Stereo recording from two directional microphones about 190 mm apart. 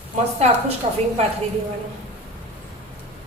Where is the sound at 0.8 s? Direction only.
35° right (ahead or behind).